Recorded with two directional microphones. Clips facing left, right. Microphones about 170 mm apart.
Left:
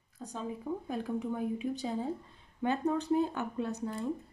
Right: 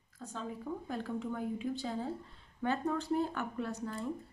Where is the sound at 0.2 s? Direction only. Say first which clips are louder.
Left 3 dB; 15° left (ahead or behind).